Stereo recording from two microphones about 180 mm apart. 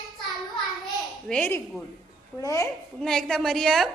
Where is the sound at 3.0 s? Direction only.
5° left (ahead or behind).